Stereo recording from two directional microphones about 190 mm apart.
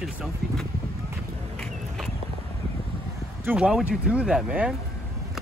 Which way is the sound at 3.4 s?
5° right (ahead or behind).